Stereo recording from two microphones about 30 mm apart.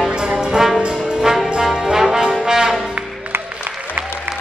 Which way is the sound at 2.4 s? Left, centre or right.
Centre.